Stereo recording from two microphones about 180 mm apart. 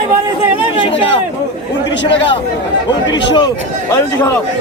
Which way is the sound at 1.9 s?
80° left.